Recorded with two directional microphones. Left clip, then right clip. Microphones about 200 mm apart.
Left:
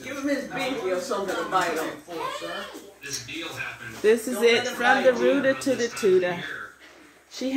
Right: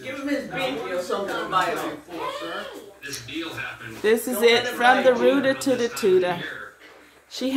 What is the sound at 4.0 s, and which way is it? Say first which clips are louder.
Speech: right 1 dB; 5° left (ahead or behind).